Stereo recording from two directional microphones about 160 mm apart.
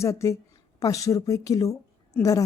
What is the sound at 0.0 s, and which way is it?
A woman's voice, 20° left (ahead or behind).